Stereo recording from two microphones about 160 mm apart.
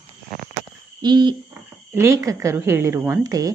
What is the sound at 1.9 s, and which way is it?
Speech, 15° right (ahead or behind).